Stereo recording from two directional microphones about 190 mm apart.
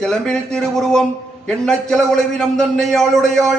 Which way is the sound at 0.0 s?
5° left (ahead or behind).